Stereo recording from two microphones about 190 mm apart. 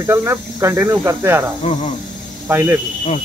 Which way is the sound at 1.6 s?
40° left (ahead or behind).